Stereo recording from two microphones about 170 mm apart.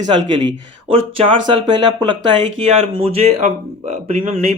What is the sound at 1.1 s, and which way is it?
A man's voice, 35° right (ahead or behind).